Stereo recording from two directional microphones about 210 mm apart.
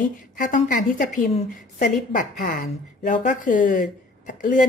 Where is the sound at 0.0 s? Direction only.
40° left (ahead or behind).